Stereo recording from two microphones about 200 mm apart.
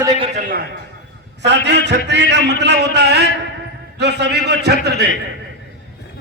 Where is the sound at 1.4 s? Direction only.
60° right (ahead or behind).